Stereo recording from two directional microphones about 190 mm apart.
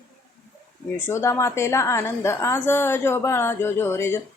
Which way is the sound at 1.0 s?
15° left (ahead or behind).